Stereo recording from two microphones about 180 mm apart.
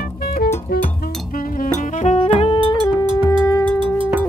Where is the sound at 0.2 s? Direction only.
55° left (ahead or behind); by 3.1 s 25° left (ahead or behind).